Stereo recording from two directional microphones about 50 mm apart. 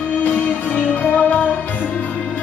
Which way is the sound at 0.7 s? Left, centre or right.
Left.